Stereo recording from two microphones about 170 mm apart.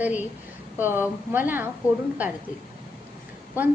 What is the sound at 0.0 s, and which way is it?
A woman's voice, 10° right (ahead or behind).